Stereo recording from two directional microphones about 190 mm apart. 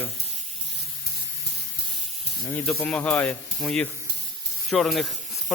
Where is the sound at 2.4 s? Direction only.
5° left (ahead or behind).